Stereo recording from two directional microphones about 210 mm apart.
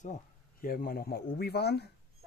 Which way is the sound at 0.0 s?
40° left (ahead or behind).